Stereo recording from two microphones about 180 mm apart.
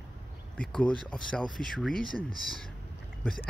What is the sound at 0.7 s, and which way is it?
Speech, 5° left (ahead or behind).